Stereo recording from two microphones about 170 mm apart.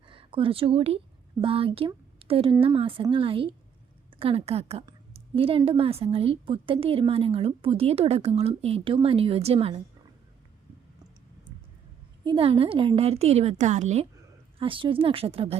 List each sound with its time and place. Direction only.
0.1 s a woman's voice: 30° right (ahead or behind)
12.2 s a woman's voice: 30° right (ahead or behind)